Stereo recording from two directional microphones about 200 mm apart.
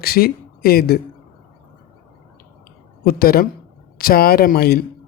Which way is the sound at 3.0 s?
50° left (ahead or behind).